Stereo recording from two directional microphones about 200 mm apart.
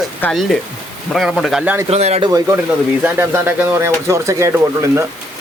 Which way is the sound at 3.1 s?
10° right (ahead or behind).